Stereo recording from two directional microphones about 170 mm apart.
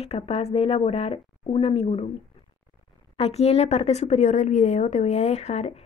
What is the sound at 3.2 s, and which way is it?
A woman's voice, 40° left (ahead or behind).